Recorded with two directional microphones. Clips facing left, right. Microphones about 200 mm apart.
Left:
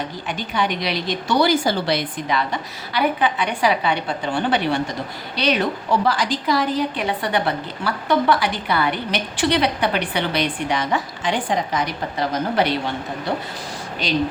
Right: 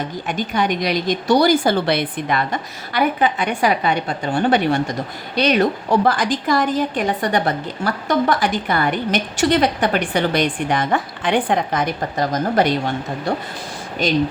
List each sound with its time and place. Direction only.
0.3 s a woman's voice: 45° right (ahead or behind)